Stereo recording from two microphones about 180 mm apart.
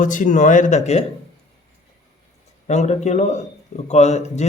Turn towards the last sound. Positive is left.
turn(degrees=40)  # may be behind; listen again after turning